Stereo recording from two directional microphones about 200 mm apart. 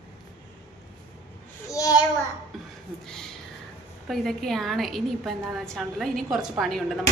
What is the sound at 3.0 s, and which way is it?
A woman's voice, centre (ahead or behind).